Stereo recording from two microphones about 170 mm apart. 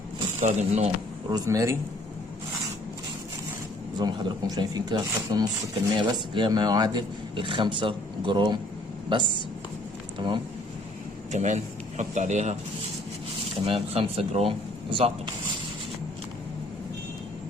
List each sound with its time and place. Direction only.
0.3 s speech: 45° right (ahead or behind)
1.3 s speech: 20° right (ahead or behind)
3.9 s a man's voice: 25° right (ahead or behind)
11.3 s speech: 45° right (ahead or behind)
13.7 s speech: 35° right (ahead or behind)